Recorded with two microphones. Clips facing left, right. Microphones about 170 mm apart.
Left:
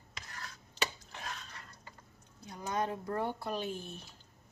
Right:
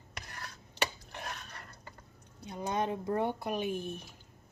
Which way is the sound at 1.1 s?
55° right (ahead or behind).